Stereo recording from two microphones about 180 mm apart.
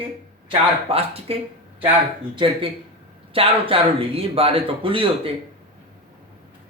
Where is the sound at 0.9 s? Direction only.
35° right (ahead or behind).